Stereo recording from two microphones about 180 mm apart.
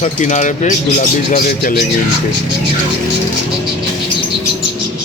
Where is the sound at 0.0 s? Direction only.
40° left (ahead or behind).